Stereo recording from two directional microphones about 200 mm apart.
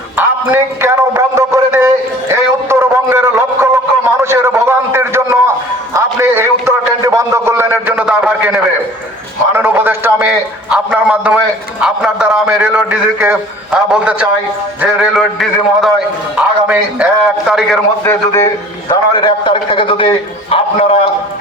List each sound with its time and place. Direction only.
0.2 s a man's voice: 10° right (ahead or behind)
2.3 s a sound: 10° right (ahead or behind)
11.8 s a man's voice: 5° right (ahead or behind)
18.0 s a man's voice: 15° left (ahead or behind); by 20.9 s 30° left (ahead or behind)